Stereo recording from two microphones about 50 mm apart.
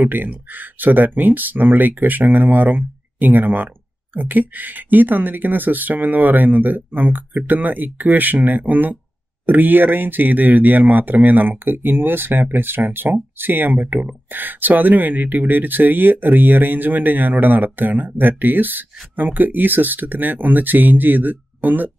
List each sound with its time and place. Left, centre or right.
0.0 s speech: right